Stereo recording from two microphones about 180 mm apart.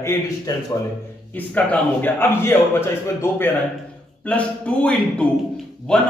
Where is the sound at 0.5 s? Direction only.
20° left (ahead or behind).